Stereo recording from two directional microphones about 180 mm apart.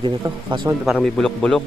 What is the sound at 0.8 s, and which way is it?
Speech, centre (ahead or behind).